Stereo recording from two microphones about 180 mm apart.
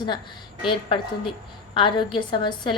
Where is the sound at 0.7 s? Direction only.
25° left (ahead or behind).